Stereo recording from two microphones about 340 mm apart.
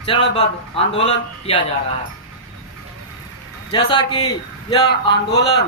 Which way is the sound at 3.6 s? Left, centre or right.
Centre.